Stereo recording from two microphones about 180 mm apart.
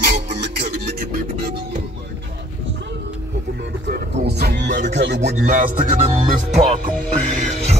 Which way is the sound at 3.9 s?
60° right (ahead or behind).